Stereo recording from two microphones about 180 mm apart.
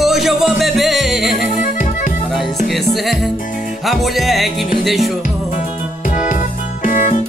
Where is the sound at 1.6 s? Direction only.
45° left (ahead or behind).